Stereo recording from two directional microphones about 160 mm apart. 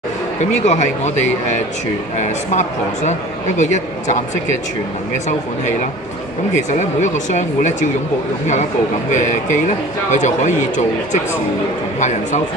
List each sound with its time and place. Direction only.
0.7 s speech: 45° left (ahead or behind)
2.1 s speech: 45° left (ahead or behind)
6.7 s speech: 50° left (ahead or behind)
9.1 s speech: 50° left (ahead or behind)
12.0 s speech: 50° left (ahead or behind)